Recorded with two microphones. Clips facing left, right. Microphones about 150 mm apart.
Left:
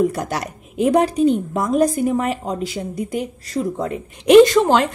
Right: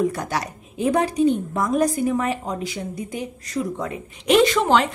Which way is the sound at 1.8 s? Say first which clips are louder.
Left 4 dB; 30° left (ahead or behind).